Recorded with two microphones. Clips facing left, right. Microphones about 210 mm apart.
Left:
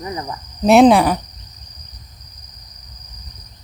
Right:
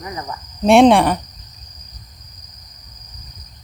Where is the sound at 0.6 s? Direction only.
Centre (ahead or behind).